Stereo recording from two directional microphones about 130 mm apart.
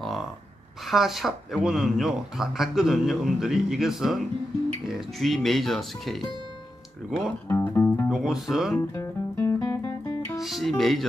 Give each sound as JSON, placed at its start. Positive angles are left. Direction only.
{"t": 0.0, "sound": "a sound", "side_deg": 0}
{"t": 0.8, "sound": "speech", "side_deg": 0}
{"t": 7.4, "sound": "music", "side_deg": 15}
{"t": 8.1, "sound": "speech", "side_deg": 0}
{"t": 8.9, "sound": "music", "side_deg": 20}
{"t": 10.4, "sound": "speech", "side_deg": 0}